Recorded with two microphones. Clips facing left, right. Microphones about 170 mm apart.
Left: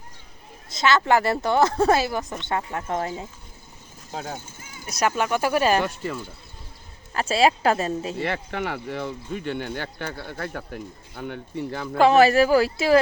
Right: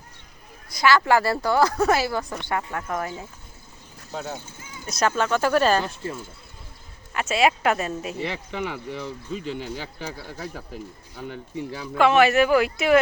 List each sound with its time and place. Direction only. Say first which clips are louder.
0.7 s speech: right 1 dB; 25° left (ahead or behind)
4.1 s a sound: right 1 dB; 45° left (ahead or behind)
4.9 s speech: right 1 dB; 15° left (ahead or behind)
5.8 s speech: left 3 dB; 70° left (ahead or behind)
7.1 s speech: left 1 dB; 35° left (ahead or behind)
8.2 s speech: left 2 dB; 60° left (ahead or behind)
11.9 s speech: left 2 dB; 35° left (ahead or behind)